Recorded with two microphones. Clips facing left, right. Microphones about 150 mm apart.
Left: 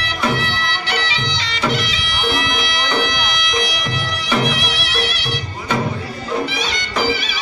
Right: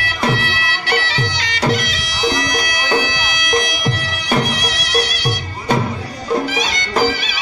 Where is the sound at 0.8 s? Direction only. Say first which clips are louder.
Right 3 dB; 45° right (ahead or behind).